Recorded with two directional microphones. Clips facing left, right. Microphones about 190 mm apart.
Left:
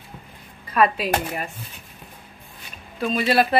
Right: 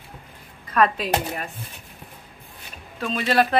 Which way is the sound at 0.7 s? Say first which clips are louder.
Left 1 dB; 5° left (ahead or behind).